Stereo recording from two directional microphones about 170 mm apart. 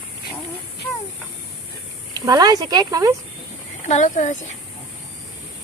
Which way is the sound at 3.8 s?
45° left (ahead or behind).